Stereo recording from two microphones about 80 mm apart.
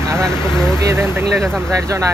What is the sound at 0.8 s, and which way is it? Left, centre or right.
Speech, right.